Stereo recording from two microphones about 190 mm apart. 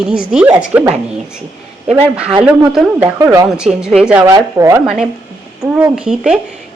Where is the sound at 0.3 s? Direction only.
5° right (ahead or behind).